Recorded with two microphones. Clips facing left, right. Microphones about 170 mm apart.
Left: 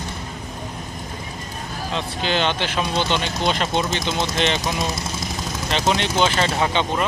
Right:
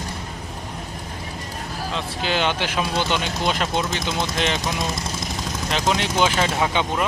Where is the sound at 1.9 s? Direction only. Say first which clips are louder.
Left 2 dB; 10° right (ahead or behind).